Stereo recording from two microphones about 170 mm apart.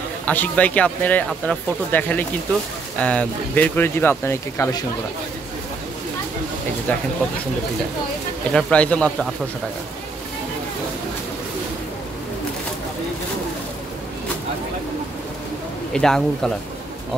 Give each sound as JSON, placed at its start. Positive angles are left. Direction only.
{"t": 0.2, "sound": "speech", "side_deg": 10}
{"t": 6.9, "sound": "speech", "side_deg": 10}
{"t": 8.5, "sound": "speech", "side_deg": 5}
{"t": 15.9, "sound": "a man's voice", "side_deg": 5}